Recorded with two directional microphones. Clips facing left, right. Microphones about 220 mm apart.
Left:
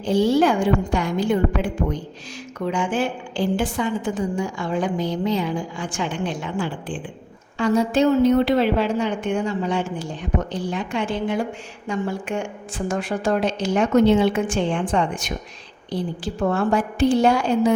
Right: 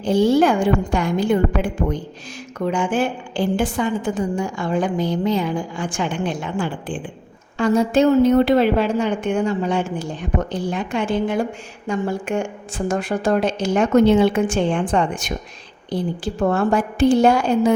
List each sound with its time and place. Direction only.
0.0 s a woman's voice: 50° right (ahead or behind)
2.7 s a woman's voice: 50° right (ahead or behind)